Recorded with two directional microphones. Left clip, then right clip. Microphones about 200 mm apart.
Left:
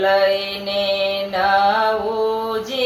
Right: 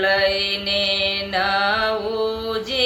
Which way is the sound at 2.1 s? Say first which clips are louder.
Left 3 dB; 20° right (ahead or behind).